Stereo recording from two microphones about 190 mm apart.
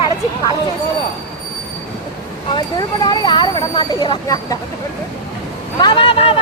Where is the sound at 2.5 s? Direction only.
20° left (ahead or behind).